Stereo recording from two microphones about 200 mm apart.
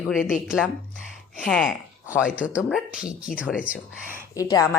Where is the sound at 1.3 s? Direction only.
5° left (ahead or behind).